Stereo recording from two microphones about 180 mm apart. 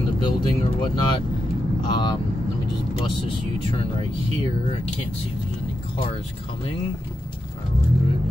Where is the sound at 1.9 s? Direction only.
25° left (ahead or behind).